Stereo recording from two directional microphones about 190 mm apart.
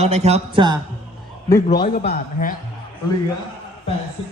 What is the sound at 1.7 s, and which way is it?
Speech, 50° left (ahead or behind).